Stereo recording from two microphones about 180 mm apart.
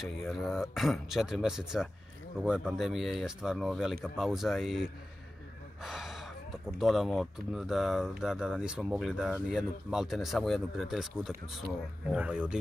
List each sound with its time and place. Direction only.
0.3 s speech: centre (ahead or behind)